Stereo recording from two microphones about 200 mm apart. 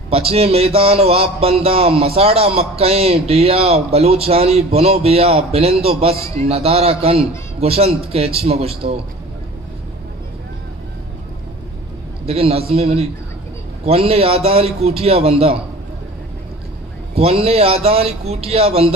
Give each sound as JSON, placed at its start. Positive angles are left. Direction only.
{"t": 0.1, "sound": "a man's voice", "side_deg": -30}
{"t": 6.1, "sound": "a man's voice", "side_deg": 15}
{"t": 6.4, "sound": "a man's voice", "side_deg": -30}
{"t": 12.3, "sound": "a man's voice", "side_deg": -30}
{"t": 17.1, "sound": "a man's voice", "side_deg": -30}